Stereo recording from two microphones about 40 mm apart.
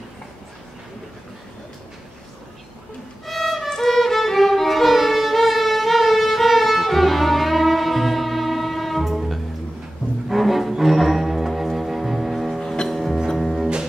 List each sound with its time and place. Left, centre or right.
3.3 s violin: centre
10.2 s cello: centre
10.7 s music: centre
12.5 s music: centre
12.8 s music: centre